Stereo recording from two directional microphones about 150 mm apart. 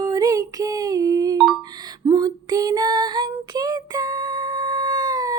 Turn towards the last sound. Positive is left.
turn(degrees=-25)  # may be behind; listen again after turning